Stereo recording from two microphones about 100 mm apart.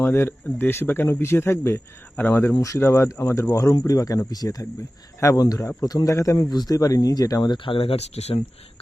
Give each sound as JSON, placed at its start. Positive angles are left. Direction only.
{"t": 0.0, "sound": "speech", "side_deg": 25}
{"t": 2.6, "sound": "speech", "side_deg": 30}